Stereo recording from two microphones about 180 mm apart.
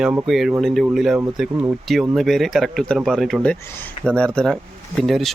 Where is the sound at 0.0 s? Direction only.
5° right (ahead or behind).